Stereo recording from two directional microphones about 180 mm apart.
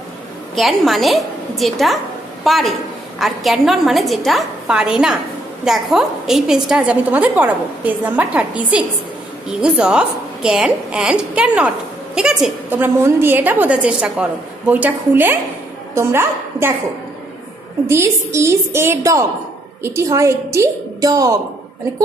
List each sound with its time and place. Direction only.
0.6 s a woman's voice: centre (ahead or behind)
17.8 s a woman's voice: 15° right (ahead or behind)